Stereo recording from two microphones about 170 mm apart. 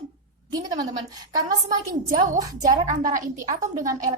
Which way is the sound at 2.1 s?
45° right (ahead or behind).